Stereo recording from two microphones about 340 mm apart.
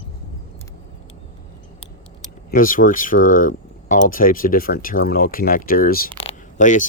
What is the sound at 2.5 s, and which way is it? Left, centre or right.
Speech, left.